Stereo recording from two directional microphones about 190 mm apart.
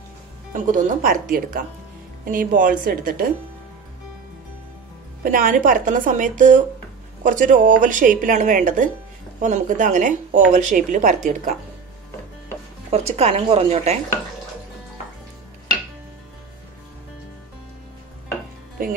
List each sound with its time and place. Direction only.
0.5 s speech: 45° right (ahead or behind)
2.2 s speech: 45° right (ahead or behind)
5.2 s speech: 45° right (ahead or behind)
12.9 s speech: 35° right (ahead or behind)